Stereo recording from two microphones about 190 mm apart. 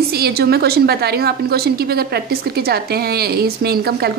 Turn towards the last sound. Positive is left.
turn(degrees=-55)  # may be behind; listen again after turning